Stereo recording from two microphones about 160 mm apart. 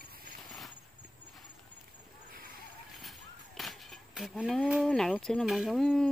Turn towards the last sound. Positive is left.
turn(degrees=5)  # may be behind; listen again after turning